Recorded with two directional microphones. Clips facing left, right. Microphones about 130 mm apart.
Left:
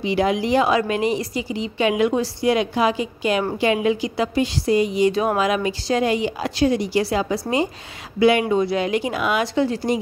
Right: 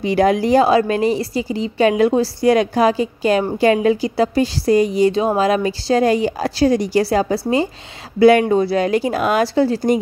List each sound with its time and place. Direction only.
0.0 s a woman's voice: 45° right (ahead or behind)
5.1 s a woman's voice: 30° right (ahead or behind)